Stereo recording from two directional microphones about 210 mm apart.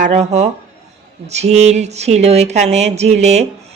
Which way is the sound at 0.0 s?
35° right (ahead or behind).